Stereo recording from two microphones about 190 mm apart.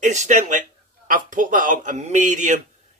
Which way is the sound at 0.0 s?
40° right (ahead or behind).